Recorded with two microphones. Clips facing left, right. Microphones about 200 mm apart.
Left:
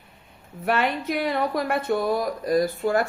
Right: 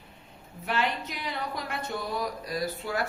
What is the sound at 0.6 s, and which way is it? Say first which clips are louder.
Speech: left 6 dB; 55° left (ahead or behind).